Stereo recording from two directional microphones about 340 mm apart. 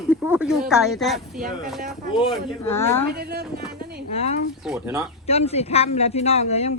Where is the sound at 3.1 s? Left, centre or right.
Right.